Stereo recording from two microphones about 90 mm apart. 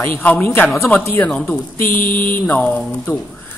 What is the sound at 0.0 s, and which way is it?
Speech, 20° left (ahead or behind).